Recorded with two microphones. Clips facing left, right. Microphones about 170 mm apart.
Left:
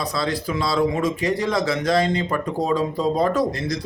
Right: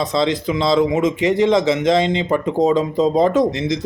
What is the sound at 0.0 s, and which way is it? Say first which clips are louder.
Speech: right 6 dB; 20° right (ahead or behind).